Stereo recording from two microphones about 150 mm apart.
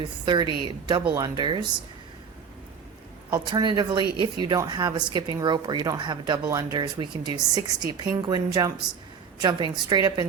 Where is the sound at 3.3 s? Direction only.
30° right (ahead or behind).